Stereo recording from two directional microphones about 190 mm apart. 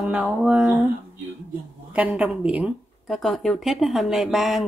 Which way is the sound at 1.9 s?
5° right (ahead or behind).